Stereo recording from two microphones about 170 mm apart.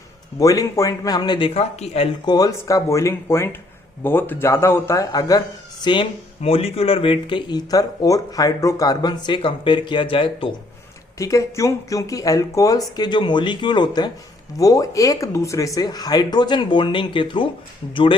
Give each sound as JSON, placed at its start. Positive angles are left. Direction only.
{"t": 0.3, "sound": "speech", "side_deg": 20}
{"t": 2.2, "sound": "speech", "side_deg": 20}
{"t": 11.2, "sound": "speech", "side_deg": 20}